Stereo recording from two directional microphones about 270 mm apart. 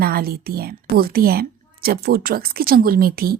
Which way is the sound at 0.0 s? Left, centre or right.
Right.